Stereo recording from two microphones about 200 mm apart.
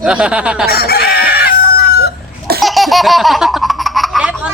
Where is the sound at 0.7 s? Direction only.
50° left (ahead or behind).